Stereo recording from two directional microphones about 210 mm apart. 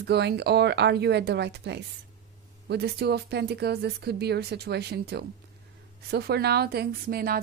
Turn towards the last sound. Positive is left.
turn(degrees=-45)  # may be behind; listen again after turning